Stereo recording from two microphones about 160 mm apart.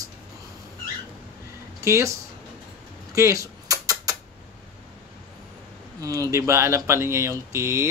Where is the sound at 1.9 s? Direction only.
20° right (ahead or behind).